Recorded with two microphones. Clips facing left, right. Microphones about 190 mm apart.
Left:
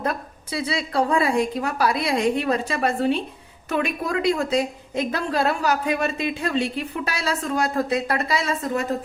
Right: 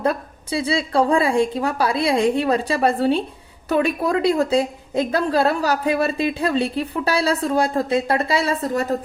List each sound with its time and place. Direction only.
0.0 s a woman's voice: 30° right (ahead or behind)